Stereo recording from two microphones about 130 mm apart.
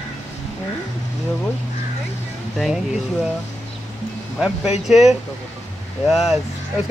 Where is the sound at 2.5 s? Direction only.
5° right (ahead or behind).